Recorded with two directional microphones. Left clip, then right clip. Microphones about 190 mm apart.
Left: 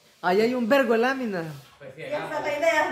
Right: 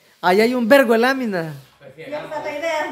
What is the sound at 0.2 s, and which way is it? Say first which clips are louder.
A man's voice: right 6 dB; 40° right (ahead or behind).